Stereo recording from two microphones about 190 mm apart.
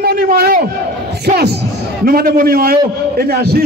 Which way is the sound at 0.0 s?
55° right (ahead or behind).